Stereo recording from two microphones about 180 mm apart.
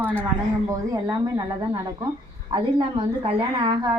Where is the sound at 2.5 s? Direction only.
30° right (ahead or behind).